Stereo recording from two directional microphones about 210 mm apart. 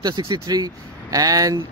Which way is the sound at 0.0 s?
20° right (ahead or behind).